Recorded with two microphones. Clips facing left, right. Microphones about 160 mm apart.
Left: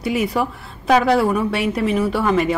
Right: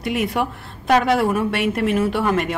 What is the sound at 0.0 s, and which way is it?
A woman's voice, centre (ahead or behind).